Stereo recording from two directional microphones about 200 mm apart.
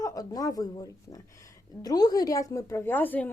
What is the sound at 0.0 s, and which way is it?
Speech, 15° left (ahead or behind).